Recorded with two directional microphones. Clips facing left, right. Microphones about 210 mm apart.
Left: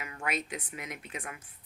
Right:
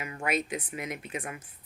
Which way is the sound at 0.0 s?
20° right (ahead or behind).